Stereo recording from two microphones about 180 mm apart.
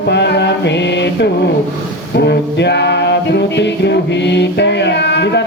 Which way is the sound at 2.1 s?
70° left (ahead or behind).